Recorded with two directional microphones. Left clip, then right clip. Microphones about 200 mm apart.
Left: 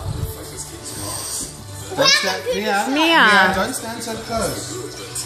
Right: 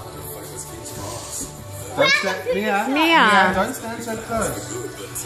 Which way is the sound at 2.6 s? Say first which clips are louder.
Left 1 dB; 5° right (ahead or behind).